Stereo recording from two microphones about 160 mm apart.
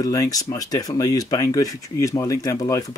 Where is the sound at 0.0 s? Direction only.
20° left (ahead or behind).